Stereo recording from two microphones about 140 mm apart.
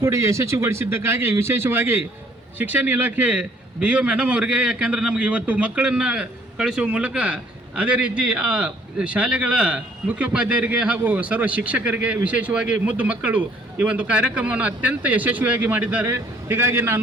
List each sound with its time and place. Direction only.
0.0 s a man's voice: 20° right (ahead or behind)